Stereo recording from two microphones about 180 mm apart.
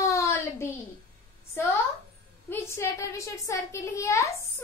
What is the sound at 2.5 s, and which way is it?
A child's voice, 15° left (ahead or behind).